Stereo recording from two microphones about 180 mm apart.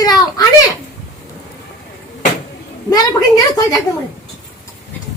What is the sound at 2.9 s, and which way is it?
Speech, 20° left (ahead or behind).